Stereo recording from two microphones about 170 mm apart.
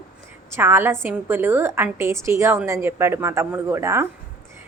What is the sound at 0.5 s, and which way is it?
A woman's voice, 15° right (ahead or behind).